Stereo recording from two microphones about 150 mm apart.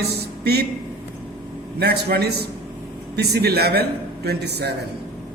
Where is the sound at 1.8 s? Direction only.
90° right.